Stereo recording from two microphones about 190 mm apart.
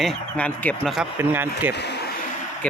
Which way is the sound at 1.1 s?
10° right (ahead or behind).